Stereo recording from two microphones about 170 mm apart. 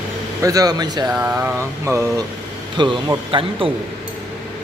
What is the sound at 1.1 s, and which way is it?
Mantra, 10° right (ahead or behind).